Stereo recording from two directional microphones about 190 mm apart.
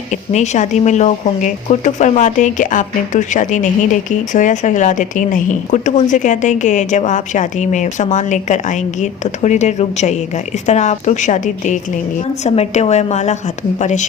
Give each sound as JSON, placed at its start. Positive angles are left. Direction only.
{"t": 0.3, "sound": "speech", "side_deg": 40}